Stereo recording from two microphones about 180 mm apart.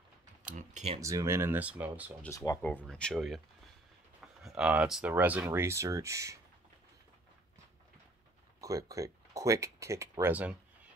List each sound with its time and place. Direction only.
0.4 s typing: 40° right (ahead or behind)
1.0 s speech: 15° right (ahead or behind)
2.2 s speech: 15° left (ahead or behind); by 6.4 s 15° right (ahead or behind)
8.5 s speech: 20° right (ahead or behind)